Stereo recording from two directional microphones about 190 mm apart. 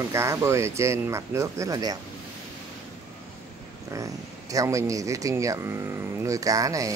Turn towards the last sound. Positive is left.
turn(degrees=-15)  # may be behind; listen again after turning